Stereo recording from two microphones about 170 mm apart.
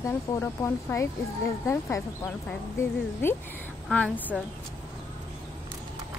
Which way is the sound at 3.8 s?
5° left (ahead or behind).